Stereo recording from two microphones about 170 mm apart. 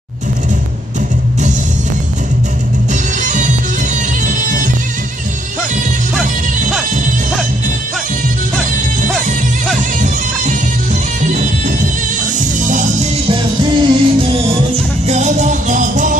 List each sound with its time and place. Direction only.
2.9 s music: 45° right (ahead or behind)
12.4 s music: 50° right (ahead or behind)
13.3 s music: 25° right (ahead or behind)
15.0 s music: 40° right (ahead or behind)